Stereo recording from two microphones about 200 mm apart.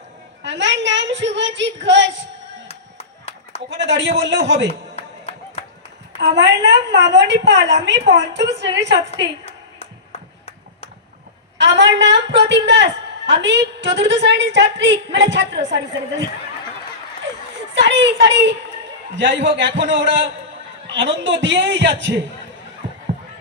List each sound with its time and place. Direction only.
0.4 s a woman's voice: 65° right (ahead or behind)
2.6 s music: 30° left (ahead or behind)
3.7 s a woman's voice: 60° right (ahead or behind)
4.7 s music: 30° left (ahead or behind)
6.1 s a woman's voice: 60° right (ahead or behind)
10.1 s a sound: 30° left (ahead or behind)
11.5 s a woman's voice: 60° right (ahead or behind)
17.7 s a sound: 60° right (ahead or behind)
19.1 s a woman's voice: 65° right (ahead or behind)